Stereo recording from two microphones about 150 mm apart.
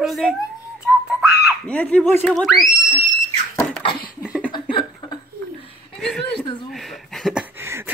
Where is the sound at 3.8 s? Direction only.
35° left (ahead or behind).